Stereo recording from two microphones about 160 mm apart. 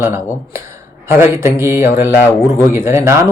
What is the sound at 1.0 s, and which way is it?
Speech, 15° right (ahead or behind).